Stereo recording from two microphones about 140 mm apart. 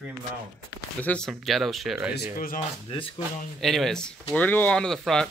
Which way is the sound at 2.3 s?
75° left (ahead or behind).